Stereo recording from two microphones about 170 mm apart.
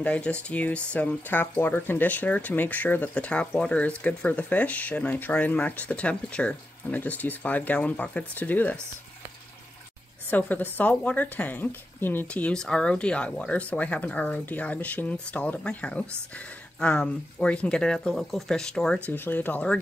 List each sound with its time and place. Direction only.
0.0 s speech: 5° left (ahead or behind)
10.3 s speech: 10° left (ahead or behind)